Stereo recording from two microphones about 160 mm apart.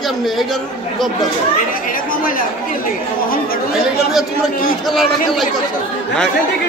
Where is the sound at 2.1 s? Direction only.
60° left (ahead or behind).